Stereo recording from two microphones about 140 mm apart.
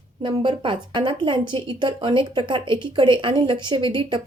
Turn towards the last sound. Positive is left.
turn(degrees=-35)  # may be behind; listen again after turning